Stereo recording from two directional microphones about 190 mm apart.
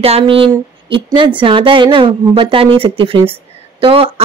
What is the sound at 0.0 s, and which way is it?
Speech, 30° right (ahead or behind).